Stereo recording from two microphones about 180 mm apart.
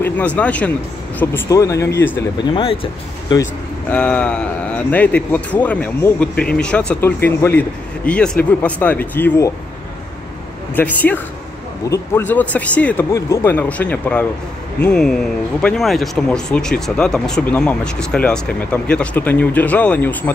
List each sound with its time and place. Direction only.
0.0 s speech: 10° left (ahead or behind)
2.3 s speech: 30° left (ahead or behind)
3.9 s speech: 5° left (ahead or behind)
10.8 s speech: 10° left (ahead or behind)